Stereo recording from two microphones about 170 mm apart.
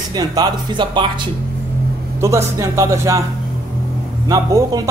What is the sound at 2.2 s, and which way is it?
Speech, 20° right (ahead or behind).